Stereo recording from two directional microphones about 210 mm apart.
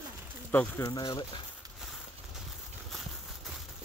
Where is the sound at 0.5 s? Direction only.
10° left (ahead or behind).